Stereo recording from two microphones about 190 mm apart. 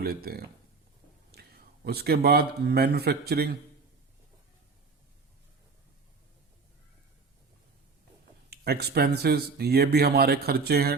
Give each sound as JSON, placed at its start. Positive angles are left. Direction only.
{"t": 0.0, "sound": "speech", "side_deg": -55}
{"t": 8.4, "sound": "speech", "side_deg": -55}